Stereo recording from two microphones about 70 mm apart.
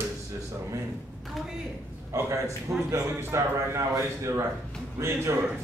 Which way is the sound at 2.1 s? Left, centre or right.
Right.